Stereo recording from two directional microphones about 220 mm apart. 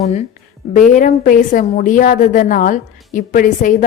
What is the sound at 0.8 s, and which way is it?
A woman's voice, 35° left (ahead or behind).